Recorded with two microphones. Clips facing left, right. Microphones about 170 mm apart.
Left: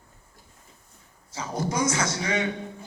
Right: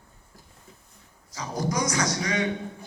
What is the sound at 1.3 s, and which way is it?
A man's voice, 25° left (ahead or behind).